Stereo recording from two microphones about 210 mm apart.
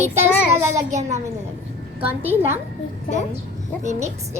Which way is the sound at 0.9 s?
35° right (ahead or behind).